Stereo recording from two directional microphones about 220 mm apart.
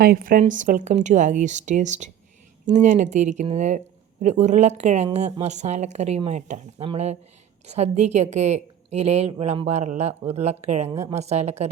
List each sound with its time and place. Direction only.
0.0 s a woman's voice: 40° right (ahead or behind)